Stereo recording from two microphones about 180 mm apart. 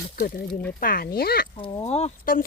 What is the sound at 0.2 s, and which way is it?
Speech, 50° left (ahead or behind).